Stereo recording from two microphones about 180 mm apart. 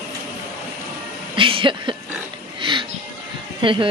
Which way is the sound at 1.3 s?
30° right (ahead or behind).